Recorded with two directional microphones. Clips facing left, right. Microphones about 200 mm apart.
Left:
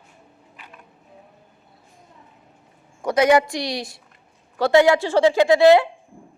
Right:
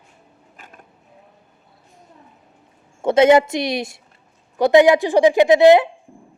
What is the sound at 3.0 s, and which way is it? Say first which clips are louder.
A woman's voice: right 4 dB; 25° right (ahead or behind).